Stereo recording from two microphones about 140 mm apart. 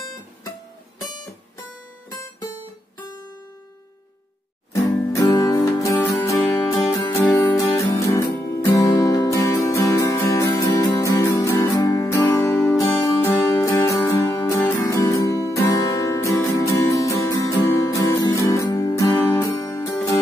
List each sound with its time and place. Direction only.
4.7 s music: 25° left (ahead or behind)